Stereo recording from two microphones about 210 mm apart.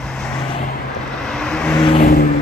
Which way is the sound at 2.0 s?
45° left (ahead or behind).